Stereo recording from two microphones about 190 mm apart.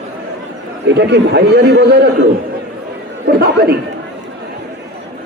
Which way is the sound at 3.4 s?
55° right (ahead or behind).